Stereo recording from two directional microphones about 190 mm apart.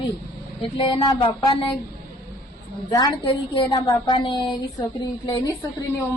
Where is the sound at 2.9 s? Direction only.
25° left (ahead or behind).